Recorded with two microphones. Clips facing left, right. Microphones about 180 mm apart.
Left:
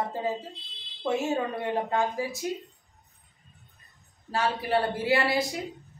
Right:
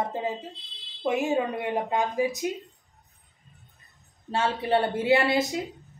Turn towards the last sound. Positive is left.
turn(degrees=-20)  # may be behind; listen again after turning